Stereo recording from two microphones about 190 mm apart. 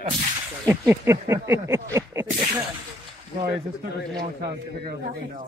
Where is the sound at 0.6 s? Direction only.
15° right (ahead or behind).